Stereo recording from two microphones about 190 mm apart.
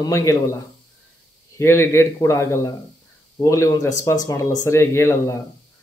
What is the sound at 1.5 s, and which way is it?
Speech, 15° left (ahead or behind).